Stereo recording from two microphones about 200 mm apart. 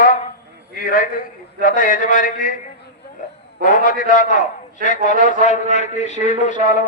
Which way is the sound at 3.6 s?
40° left (ahead or behind).